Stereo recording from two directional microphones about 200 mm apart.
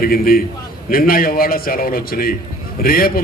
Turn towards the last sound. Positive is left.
turn(degrees=50)  # may be behind; listen again after turning